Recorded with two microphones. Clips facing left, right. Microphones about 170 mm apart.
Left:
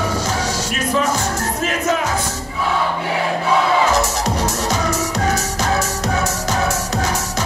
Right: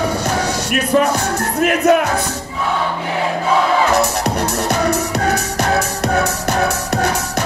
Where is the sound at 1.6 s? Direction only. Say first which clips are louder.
Right 9 dB; 60° right (ahead or behind).